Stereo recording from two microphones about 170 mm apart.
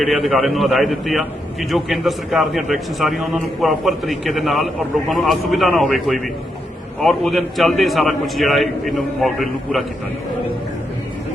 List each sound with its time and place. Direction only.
0.0 s a man's voice: centre (ahead or behind)